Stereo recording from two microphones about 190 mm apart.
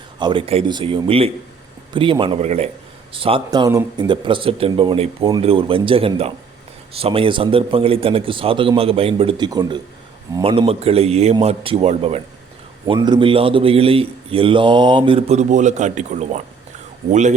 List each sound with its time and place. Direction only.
0.2 s a man's voice: 25° right (ahead or behind)